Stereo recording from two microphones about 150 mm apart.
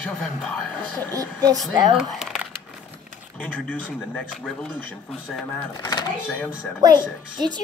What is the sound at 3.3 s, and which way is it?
Speech, 10° left (ahead or behind).